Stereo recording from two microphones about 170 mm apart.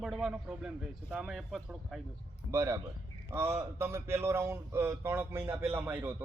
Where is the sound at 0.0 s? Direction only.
Centre (ahead or behind).